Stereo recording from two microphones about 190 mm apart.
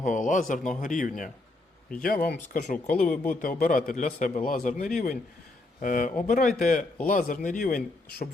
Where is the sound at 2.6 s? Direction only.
40° left (ahead or behind).